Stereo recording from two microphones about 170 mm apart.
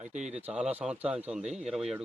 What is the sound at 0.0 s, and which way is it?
Speech, 45° right (ahead or behind).